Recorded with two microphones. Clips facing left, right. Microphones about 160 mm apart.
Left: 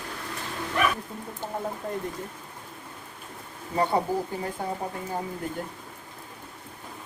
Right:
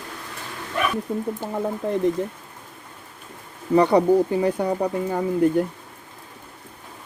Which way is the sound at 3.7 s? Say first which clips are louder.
Right 9 dB; 85° right.